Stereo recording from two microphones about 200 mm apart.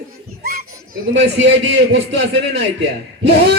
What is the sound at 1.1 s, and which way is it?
A man's voice, 65° right (ahead or behind).